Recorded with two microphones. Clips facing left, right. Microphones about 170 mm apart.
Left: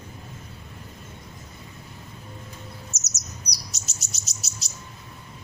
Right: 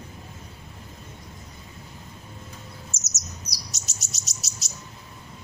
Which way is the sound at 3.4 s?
Centre (ahead or behind).